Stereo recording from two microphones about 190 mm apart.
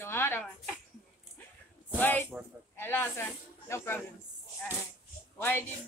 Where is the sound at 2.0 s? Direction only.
10° left (ahead or behind).